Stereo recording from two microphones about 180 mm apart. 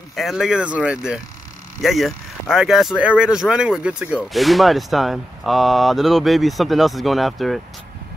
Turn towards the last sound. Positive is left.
turn(degrees=0)  # may be behind; listen again after turning